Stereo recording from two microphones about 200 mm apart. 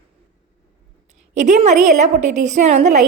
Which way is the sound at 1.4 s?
35° right (ahead or behind).